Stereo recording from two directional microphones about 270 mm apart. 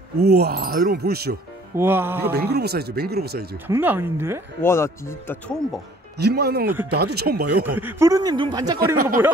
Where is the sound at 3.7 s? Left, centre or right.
Centre.